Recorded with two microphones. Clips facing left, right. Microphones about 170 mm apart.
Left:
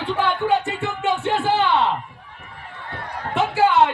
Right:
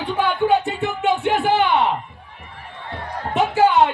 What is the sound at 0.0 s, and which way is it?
Music, 15° right (ahead or behind).